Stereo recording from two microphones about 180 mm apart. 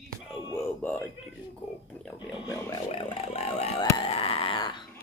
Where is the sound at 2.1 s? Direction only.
25° left (ahead or behind).